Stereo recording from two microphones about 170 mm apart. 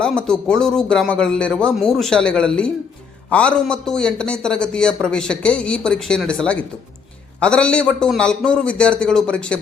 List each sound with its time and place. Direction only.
0.0 s a man's voice: 5° left (ahead or behind)